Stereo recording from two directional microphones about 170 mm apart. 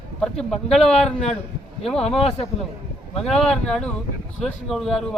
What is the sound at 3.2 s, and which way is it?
Speech, centre (ahead or behind).